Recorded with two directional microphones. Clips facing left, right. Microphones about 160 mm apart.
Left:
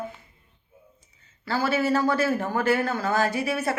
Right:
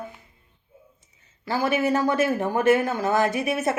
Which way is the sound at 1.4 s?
15° right (ahead or behind).